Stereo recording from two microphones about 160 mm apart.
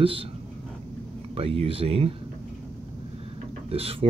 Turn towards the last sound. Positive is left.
turn(degrees=-35)  # may be behind; listen again after turning